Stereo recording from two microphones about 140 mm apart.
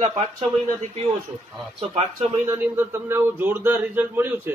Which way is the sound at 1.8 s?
50° right (ahead or behind).